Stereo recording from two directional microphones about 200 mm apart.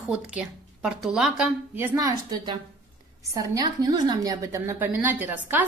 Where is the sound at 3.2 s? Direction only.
15° right (ahead or behind).